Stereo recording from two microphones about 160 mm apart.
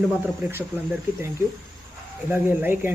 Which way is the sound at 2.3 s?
10° right (ahead or behind).